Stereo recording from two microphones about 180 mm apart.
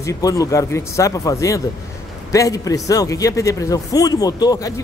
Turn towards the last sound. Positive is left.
turn(degrees=20)  # may be behind; listen again after turning